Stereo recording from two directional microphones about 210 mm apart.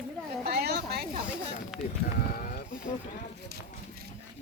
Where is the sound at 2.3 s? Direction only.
40° left (ahead or behind).